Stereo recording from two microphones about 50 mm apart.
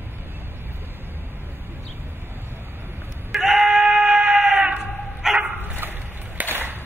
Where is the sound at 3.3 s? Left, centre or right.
Centre.